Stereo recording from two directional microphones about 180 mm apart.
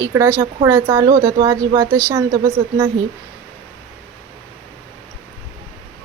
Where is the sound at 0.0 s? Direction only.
15° right (ahead or behind).